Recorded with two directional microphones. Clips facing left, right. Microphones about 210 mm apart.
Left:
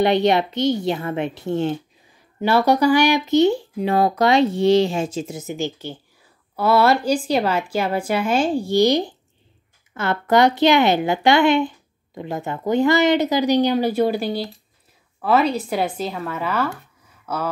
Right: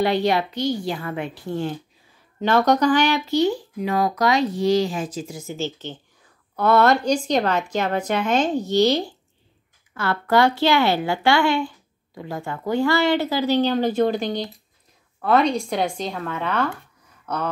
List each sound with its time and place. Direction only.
0.0 s speech: 20° left (ahead or behind)
2.4 s speech: 10° left (ahead or behind)